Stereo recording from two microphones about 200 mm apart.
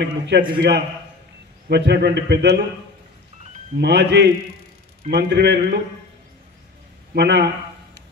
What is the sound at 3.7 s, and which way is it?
A man's voice, 55° right (ahead or behind).